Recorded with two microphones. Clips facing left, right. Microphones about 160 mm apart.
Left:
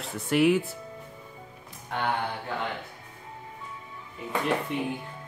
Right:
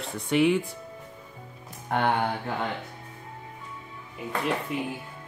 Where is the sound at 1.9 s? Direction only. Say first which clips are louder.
Right 5 dB; 55° right (ahead or behind).